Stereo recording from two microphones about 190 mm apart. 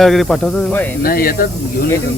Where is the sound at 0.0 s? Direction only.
Centre (ahead or behind).